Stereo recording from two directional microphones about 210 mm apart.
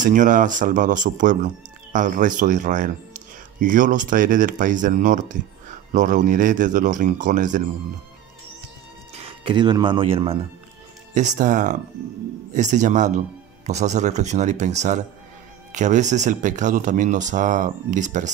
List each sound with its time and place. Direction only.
0.0 s speech: 35° right (ahead or behind)
9.1 s speech: 25° right (ahead or behind)